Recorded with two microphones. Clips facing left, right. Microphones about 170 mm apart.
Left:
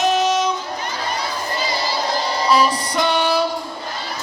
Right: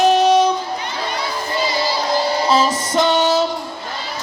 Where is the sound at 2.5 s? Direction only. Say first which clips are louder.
Right 1 dB; 25° right (ahead or behind).